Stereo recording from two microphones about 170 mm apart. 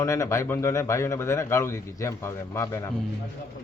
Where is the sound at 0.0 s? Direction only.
20° left (ahead or behind).